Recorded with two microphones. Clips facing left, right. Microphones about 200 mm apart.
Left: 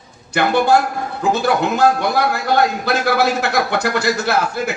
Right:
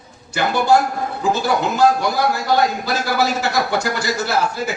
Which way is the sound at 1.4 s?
60° left (ahead or behind).